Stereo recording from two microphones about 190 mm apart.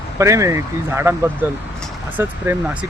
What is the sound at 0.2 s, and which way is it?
Speech, 15° right (ahead or behind).